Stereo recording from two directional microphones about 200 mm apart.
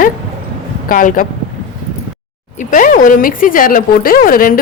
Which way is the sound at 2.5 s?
40° left (ahead or behind).